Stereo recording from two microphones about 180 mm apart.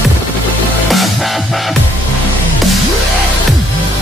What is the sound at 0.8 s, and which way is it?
Music, centre (ahead or behind).